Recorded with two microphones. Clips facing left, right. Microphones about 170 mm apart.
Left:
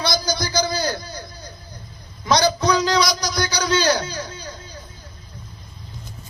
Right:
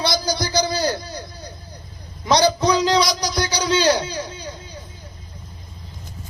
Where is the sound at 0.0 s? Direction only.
30° right (ahead or behind).